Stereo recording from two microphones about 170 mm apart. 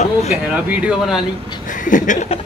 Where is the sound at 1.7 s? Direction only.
50° left (ahead or behind).